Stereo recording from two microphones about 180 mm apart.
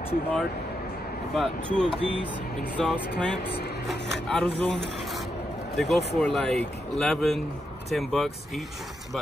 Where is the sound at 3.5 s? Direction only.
65° left (ahead or behind).